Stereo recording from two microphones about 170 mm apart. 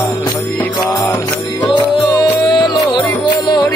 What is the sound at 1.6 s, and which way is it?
Music, 25° left (ahead or behind).